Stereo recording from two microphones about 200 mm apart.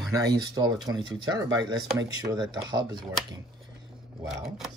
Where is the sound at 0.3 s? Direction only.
20° right (ahead or behind).